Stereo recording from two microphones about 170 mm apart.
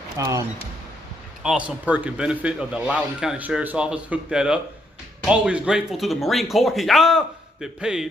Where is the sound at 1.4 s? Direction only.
5° right (ahead or behind).